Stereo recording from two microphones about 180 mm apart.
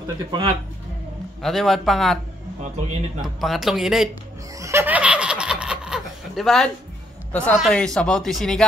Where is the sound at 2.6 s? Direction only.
40° right (ahead or behind).